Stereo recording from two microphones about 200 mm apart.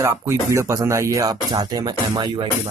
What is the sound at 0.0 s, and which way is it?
Speech, 15° right (ahead or behind).